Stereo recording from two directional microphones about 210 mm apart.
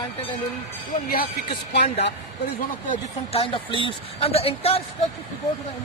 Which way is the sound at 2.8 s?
35° left (ahead or behind).